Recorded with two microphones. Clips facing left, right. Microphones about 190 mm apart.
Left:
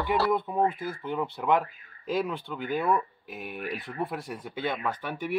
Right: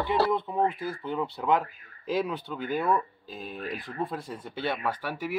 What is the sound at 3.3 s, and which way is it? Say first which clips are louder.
Speech: even; 70° left (ahead or behind).